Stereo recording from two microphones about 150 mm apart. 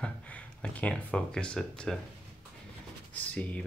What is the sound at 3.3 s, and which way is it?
Speech, 10° left (ahead or behind).